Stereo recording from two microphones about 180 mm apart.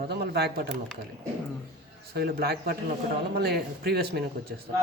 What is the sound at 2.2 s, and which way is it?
Speech, 60° right (ahead or behind).